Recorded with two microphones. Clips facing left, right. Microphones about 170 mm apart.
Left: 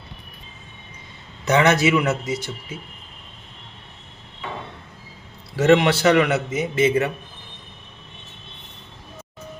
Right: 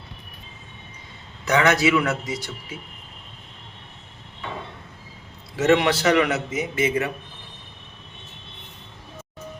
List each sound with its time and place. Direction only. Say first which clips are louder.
1.5 s a man's voice: left 2 dB; 25° left (ahead or behind)
5.5 s a man's voice: left 3 dB; 30° left (ahead or behind)